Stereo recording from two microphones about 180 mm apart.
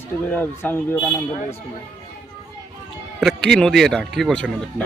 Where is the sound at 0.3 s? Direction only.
10° left (ahead or behind).